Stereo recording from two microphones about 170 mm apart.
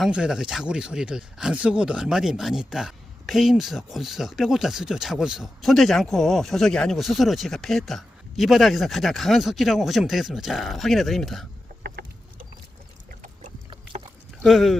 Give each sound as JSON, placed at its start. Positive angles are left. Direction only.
{"t": 0.0, "sound": "speech", "side_deg": -5}
{"t": 11.8, "sound": "chicken", "side_deg": -70}
{"t": 14.4, "sound": "speech", "side_deg": 0}